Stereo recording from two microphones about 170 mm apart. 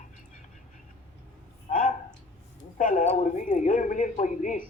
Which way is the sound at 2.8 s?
50° left (ahead or behind).